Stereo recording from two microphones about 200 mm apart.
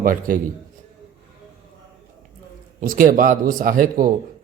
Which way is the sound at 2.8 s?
45° right (ahead or behind).